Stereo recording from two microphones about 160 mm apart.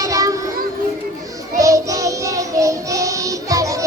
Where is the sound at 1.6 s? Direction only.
20° right (ahead or behind).